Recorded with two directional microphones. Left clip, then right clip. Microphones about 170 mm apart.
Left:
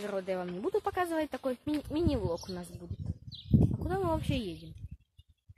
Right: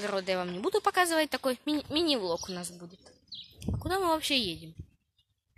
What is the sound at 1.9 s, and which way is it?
Speech, 5° left (ahead or behind).